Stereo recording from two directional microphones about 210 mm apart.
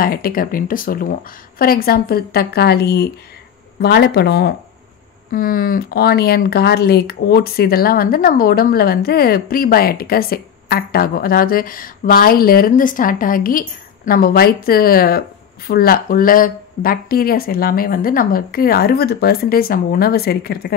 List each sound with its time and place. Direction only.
0.0 s speech: 45° left (ahead or behind)